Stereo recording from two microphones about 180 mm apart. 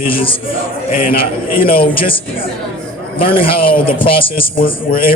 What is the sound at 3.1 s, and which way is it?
A man's voice, 30° left (ahead or behind).